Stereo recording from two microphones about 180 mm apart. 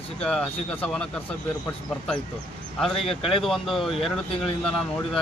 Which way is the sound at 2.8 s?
Centre (ahead or behind).